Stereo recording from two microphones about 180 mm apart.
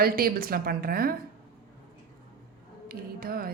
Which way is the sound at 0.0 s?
55° right (ahead or behind).